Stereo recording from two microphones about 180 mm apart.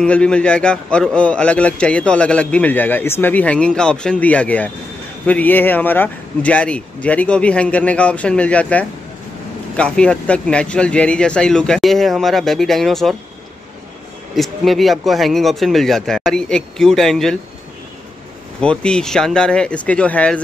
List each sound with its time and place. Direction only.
0.0 s a man's voice: 5° left (ahead or behind)
14.3 s speech: centre (ahead or behind)
18.6 s speech: 5° left (ahead or behind)